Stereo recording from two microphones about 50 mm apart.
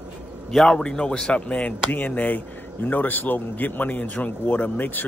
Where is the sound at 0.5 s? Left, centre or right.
Centre.